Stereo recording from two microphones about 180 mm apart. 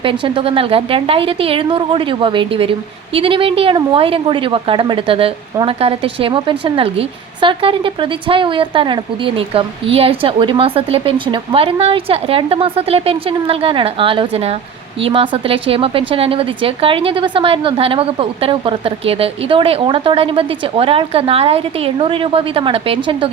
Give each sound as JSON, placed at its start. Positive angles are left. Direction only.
{"t": 0.0, "sound": "a woman's voice", "side_deg": -30}